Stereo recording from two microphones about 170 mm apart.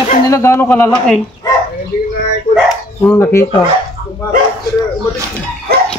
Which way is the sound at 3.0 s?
15° left (ahead or behind).